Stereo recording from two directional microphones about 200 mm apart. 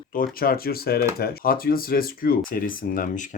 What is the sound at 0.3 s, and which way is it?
Speech, 50° left (ahead or behind).